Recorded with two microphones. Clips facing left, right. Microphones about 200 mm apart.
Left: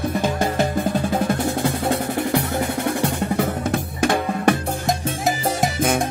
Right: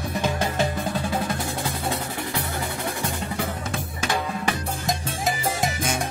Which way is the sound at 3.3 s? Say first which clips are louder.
Left 7 dB; 55° left (ahead or behind).